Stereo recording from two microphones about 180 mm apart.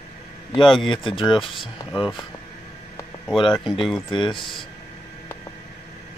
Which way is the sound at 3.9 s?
25° left (ahead or behind).